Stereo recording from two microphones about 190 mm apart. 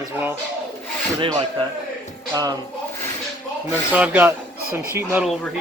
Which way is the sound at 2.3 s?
15° right (ahead or behind).